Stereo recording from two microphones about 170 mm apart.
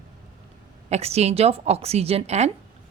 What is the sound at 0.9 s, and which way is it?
A woman's voice, 40° right (ahead or behind).